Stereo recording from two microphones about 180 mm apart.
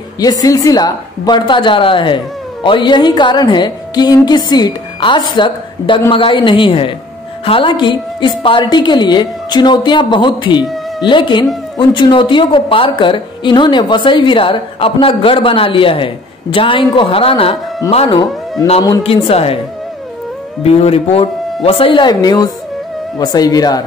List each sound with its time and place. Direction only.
0.2 s a woman's voice: 20° left (ahead or behind)
10.6 s music: centre (ahead or behind)
11.1 s a woman's voice: 25° left (ahead or behind)
20.6 s a woman's voice: 35° left (ahead or behind)